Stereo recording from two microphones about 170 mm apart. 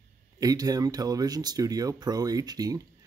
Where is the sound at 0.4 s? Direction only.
20° right (ahead or behind).